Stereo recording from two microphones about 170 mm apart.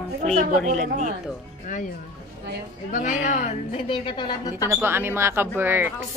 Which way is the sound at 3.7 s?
30° left (ahead or behind).